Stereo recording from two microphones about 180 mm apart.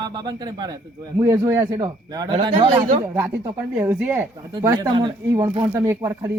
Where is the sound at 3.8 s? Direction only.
15° right (ahead or behind).